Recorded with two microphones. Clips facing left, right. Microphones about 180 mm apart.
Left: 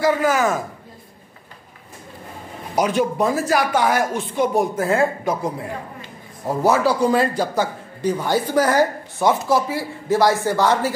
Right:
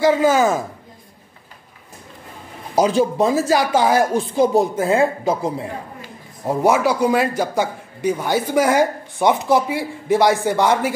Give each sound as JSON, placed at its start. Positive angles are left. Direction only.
{"t": 0.0, "sound": "speech", "side_deg": -25}
{"t": 2.7, "sound": "a man's voice", "side_deg": -30}